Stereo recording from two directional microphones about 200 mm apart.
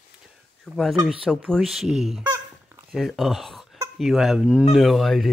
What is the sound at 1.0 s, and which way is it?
Speech, centre (ahead or behind).